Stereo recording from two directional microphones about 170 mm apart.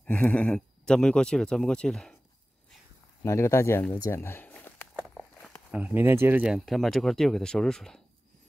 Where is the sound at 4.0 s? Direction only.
15° left (ahead or behind).